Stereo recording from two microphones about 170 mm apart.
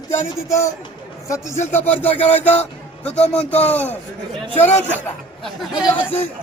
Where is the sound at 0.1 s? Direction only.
15° left (ahead or behind).